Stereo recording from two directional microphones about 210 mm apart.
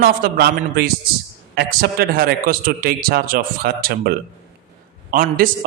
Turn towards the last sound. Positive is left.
turn(degrees=-40)  # may be behind; listen again after turning